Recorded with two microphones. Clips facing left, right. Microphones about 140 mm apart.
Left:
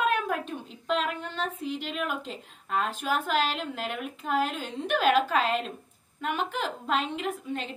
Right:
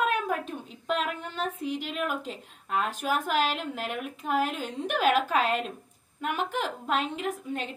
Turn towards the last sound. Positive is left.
turn(degrees=-5)  # may be behind; listen again after turning